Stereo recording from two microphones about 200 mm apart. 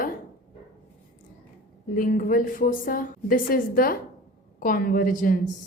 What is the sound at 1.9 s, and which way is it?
A woman's voice, 45° left (ahead or behind).